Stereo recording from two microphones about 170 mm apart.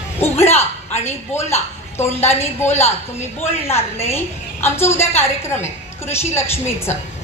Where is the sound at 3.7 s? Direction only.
15° left (ahead or behind).